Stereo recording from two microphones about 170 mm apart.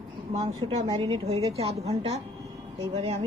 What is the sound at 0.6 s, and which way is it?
A woman's voice, 35° right (ahead or behind).